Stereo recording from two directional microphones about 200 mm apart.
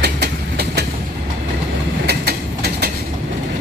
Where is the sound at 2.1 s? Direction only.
50° right (ahead or behind).